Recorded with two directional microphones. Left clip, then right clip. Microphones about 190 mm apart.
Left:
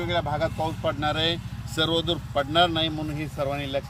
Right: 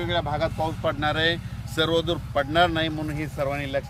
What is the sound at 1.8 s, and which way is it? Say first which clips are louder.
Speech: right 1 dB; centre (ahead or behind).